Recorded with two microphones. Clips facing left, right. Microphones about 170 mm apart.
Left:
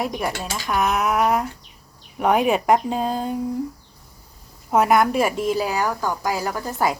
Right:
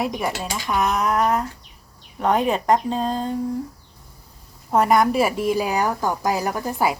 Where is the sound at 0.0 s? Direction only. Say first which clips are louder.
Right 1 dB; centre (ahead or behind).